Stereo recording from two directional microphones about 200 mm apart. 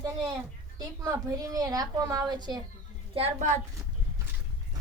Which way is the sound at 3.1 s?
35° right (ahead or behind).